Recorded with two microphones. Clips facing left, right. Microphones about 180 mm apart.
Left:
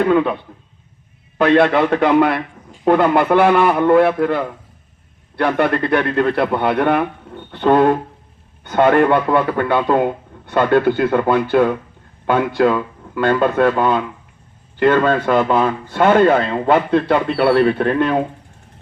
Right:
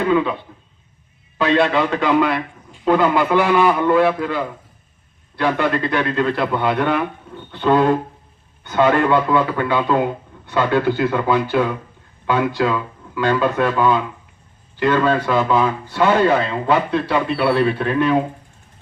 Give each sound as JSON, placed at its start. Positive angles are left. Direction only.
{"t": 0.1, "sound": "a man's voice", "side_deg": 55}
{"t": 1.4, "sound": "a man's voice", "side_deg": 55}